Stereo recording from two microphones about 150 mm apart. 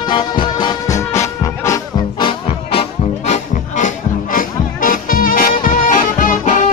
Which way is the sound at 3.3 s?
55° left (ahead or behind).